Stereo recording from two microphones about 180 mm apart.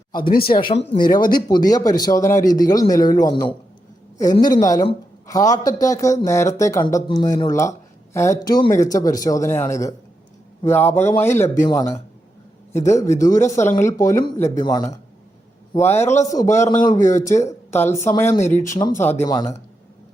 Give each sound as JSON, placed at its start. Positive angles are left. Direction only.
{"t": 0.2, "sound": "speech", "side_deg": 50}
{"t": 0.4, "sound": "speech", "side_deg": 30}
{"t": 16.0, "sound": "speech", "side_deg": 40}
{"t": 16.3, "sound": "speech", "side_deg": 15}
{"t": 18.3, "sound": "speech", "side_deg": 40}
{"t": 18.8, "sound": "speech", "side_deg": 15}